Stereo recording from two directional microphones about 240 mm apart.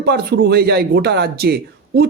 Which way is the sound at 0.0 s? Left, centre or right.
Right.